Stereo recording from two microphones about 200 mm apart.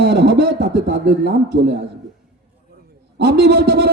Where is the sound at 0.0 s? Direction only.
60° right (ahead or behind).